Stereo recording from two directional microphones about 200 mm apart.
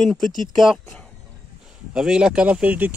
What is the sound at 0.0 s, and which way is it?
Speech, centre (ahead or behind).